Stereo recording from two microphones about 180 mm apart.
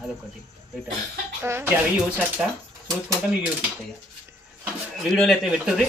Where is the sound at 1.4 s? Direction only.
10° right (ahead or behind).